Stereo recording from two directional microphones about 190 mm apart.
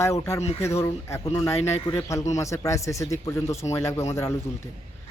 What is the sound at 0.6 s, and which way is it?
Speech, 15° left (ahead or behind).